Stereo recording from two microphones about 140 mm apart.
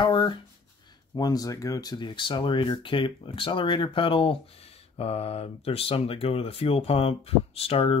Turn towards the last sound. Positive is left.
turn(degrees=45)  # may be behind; listen again after turning